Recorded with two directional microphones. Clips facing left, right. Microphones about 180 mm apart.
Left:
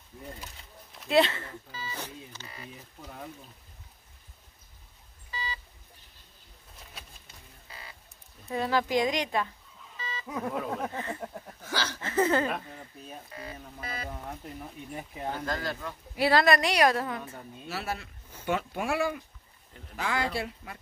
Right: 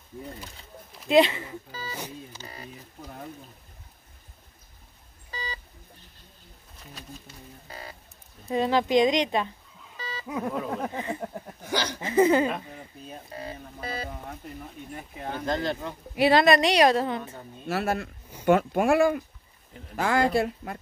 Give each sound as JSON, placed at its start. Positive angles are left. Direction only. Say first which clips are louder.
{"t": 1.0, "sound": "speech", "louder": "right 4 dB", "side_deg": -15}
{"t": 1.7, "sound": "speech", "louder": "right 3 dB", "side_deg": -40}
{"t": 2.0, "sound": "speech", "louder": "right 3 dB", "side_deg": -10}
{"t": 2.4, "sound": "speech", "louder": "right 3 dB", "side_deg": -40}
{"t": 5.3, "sound": "telephone dialing", "louder": "right 1 dB", "side_deg": -40}
{"t": 7.6, "sound": "a sound", "louder": "right 7 dB", "side_deg": -45}
{"t": 8.5, "sound": "speech", "louder": "right 4 dB", "side_deg": -20}
{"t": 10.2, "sound": "speech", "louder": "right 3 dB", "side_deg": -5}
{"t": 10.9, "sound": "speech", "louder": "right 4 dB", "side_deg": -15}
{"t": 13.3, "sound": "speech", "louder": "right 4 dB", "side_deg": -30}
{"t": 15.3, "sound": "speech", "louder": "right 8 dB", "side_deg": -20}
{"t": 17.6, "sound": "speech", "louder": "right 8 dB", "side_deg": -55}